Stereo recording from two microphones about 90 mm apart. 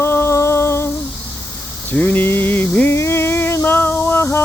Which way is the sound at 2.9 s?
30° left (ahead or behind).